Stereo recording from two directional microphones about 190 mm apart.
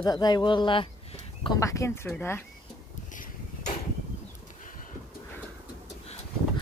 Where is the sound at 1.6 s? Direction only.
15° left (ahead or behind).